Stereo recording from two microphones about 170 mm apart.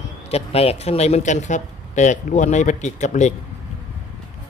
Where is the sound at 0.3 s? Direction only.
35° left (ahead or behind).